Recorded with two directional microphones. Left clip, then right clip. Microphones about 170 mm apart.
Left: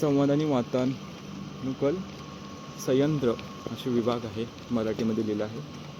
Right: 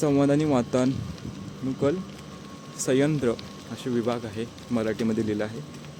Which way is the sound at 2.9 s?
15° right (ahead or behind).